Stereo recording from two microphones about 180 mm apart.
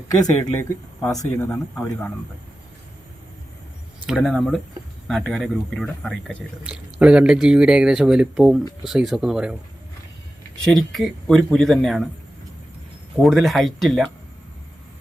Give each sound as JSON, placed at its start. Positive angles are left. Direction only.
{"t": 0.6, "sound": "speech", "side_deg": 15}
{"t": 4.0, "sound": "speech", "side_deg": 0}
{"t": 10.6, "sound": "speech", "side_deg": 0}
{"t": 13.2, "sound": "speech", "side_deg": 0}